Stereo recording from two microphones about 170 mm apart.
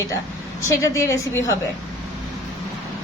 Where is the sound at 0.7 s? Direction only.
15° left (ahead or behind).